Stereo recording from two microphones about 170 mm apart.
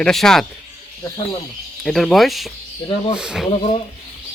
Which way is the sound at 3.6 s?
35° left (ahead or behind).